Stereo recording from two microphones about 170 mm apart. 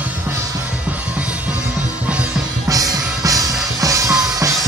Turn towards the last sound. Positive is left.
turn(degrees=-20)  # may be behind; listen again after turning